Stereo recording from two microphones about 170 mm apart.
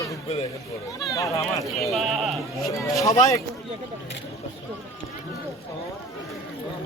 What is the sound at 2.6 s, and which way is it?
Speech, 20° left (ahead or behind).